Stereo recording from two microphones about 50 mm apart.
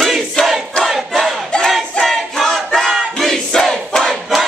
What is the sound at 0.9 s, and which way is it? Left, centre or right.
Battle cry, centre.